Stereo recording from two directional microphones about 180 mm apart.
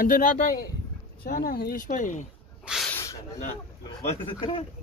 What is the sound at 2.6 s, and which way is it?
Snake, centre (ahead or behind).